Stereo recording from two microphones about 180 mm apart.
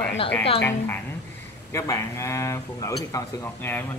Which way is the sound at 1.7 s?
15° left (ahead or behind).